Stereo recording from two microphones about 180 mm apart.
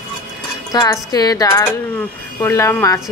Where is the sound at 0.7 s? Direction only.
20° left (ahead or behind).